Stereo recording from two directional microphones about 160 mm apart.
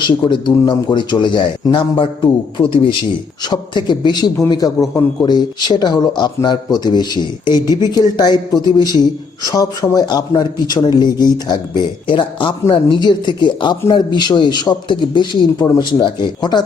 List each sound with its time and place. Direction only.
0.3 s speech: 30° left (ahead or behind)
9.5 s speech: 25° left (ahead or behind)